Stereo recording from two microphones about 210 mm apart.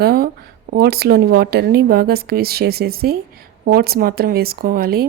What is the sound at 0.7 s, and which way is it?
A woman's voice, 50° right (ahead or behind).